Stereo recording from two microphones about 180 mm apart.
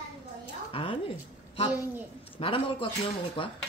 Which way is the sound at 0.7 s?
30° left (ahead or behind).